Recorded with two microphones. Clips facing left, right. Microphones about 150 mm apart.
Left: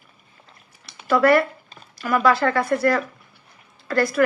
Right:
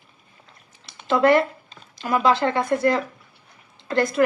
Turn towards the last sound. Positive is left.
turn(degrees=-20)  # may be behind; listen again after turning